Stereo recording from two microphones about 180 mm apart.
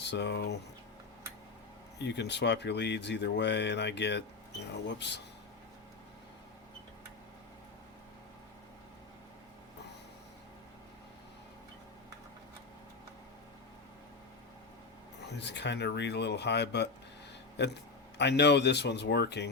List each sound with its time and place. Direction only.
0.0 s speech: 70° left (ahead or behind)
2.0 s speech: 70° left (ahead or behind)
15.3 s speech: 70° left (ahead or behind)
18.2 s speech: 70° left (ahead or behind)